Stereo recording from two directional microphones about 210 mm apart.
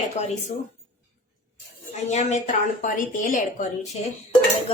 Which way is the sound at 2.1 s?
35° left (ahead or behind).